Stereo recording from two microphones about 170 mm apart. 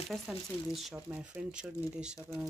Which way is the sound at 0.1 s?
Centre (ahead or behind).